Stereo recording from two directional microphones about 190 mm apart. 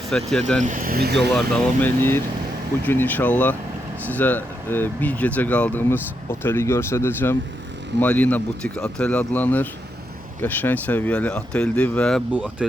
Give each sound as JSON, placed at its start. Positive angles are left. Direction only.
{"t": 0.1, "sound": "speech", "side_deg": 0}
{"t": 0.6, "sound": "speech", "side_deg": -45}
{"t": 1.3, "sound": "speech", "side_deg": 5}
{"t": 12.3, "sound": "speech", "side_deg": -5}